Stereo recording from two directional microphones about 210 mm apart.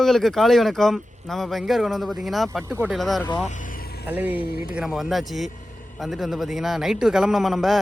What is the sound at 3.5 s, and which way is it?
Vehicle, 40° left (ahead or behind).